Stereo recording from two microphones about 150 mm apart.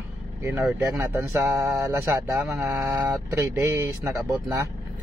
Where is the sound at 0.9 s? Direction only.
15° right (ahead or behind).